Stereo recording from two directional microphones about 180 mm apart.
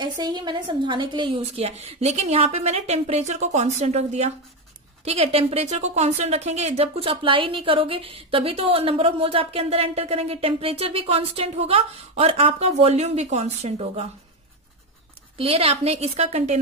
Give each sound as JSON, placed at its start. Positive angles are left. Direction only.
{"t": 0.2, "sound": "a woman's voice", "side_deg": -25}
{"t": 15.3, "sound": "a woman's voice", "side_deg": -30}